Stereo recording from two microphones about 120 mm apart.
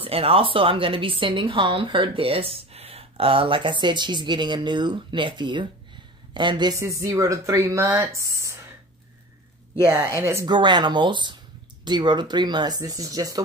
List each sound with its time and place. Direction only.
0.0 s a woman's voice: 55° right (ahead or behind)
6.8 s speech: 25° right (ahead or behind)
10.1 s speech: 20° right (ahead or behind)
10.4 s speech: 40° right (ahead or behind)